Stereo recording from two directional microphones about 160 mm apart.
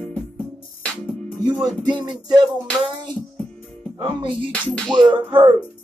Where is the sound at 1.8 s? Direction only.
30° right (ahead or behind).